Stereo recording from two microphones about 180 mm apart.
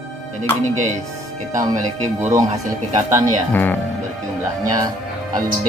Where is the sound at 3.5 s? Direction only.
10° left (ahead or behind).